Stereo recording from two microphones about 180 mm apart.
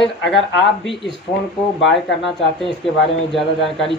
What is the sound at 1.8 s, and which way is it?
A man's voice, centre (ahead or behind).